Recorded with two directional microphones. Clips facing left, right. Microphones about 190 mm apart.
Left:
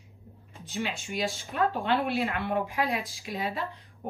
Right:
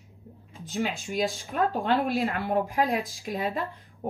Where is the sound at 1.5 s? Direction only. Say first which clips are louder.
Right 1 dB; 35° right (ahead or behind).